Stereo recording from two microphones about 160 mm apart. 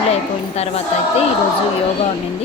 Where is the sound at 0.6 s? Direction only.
40° left (ahead or behind).